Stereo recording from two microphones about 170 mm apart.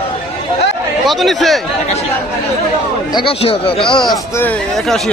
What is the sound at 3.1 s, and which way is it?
Speech, 35° left (ahead or behind).